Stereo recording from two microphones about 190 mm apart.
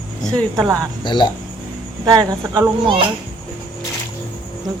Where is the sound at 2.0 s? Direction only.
20° right (ahead or behind).